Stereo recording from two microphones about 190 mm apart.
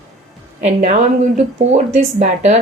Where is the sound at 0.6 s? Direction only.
35° right (ahead or behind).